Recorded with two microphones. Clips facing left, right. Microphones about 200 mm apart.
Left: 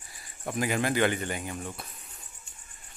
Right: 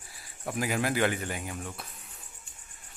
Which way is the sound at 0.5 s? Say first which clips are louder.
Left 1 dB; centre (ahead or behind).